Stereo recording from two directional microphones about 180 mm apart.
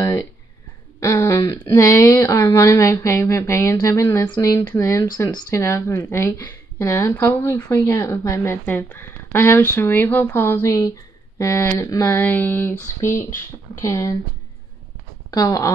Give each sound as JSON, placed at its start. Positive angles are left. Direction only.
{"t": 0.0, "sound": "a sound", "side_deg": 20}
{"t": 1.0, "sound": "speech", "side_deg": 15}
{"t": 15.3, "sound": "speech", "side_deg": 20}